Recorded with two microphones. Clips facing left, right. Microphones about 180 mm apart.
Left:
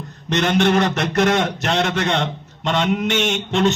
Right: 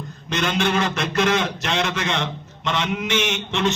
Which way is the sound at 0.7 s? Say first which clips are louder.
Left 5 dB; 40° left (ahead or behind).